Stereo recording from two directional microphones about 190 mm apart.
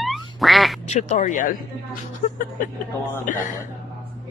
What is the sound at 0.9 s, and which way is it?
Speech, 40° left (ahead or behind).